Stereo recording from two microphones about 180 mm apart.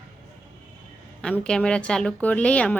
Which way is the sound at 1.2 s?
5° left (ahead or behind).